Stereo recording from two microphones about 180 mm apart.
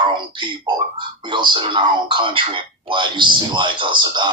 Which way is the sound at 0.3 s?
25° right (ahead or behind).